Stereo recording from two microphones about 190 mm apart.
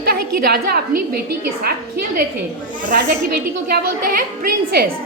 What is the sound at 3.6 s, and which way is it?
Speech, 50° right (ahead or behind).